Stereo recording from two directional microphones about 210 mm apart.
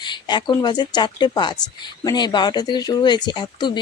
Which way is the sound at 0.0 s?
20° left (ahead or behind).